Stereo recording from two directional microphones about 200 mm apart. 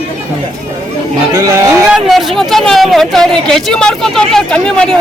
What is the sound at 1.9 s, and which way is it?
Speech, centre (ahead or behind).